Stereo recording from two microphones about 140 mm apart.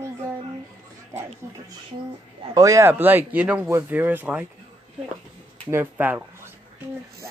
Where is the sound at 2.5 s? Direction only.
25° right (ahead or behind).